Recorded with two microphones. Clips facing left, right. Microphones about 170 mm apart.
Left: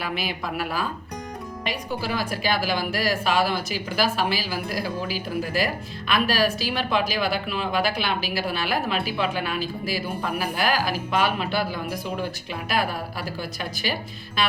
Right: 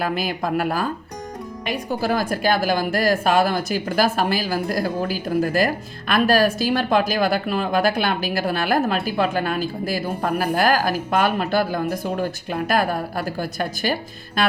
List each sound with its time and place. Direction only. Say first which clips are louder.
0.0 s a woman's voice: right 6 dB; 45° right (ahead or behind)